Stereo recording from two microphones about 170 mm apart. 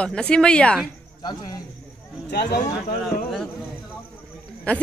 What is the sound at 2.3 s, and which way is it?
Speech, 70° left (ahead or behind).